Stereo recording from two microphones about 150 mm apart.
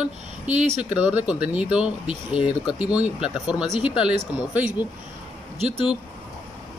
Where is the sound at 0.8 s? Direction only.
10° right (ahead or behind).